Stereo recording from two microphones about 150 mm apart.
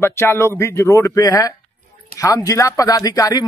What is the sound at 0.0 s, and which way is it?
Speech, 15° left (ahead or behind).